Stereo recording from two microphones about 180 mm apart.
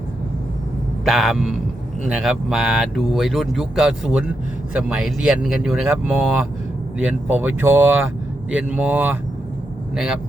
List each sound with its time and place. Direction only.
1.0 s speech: centre (ahead or behind)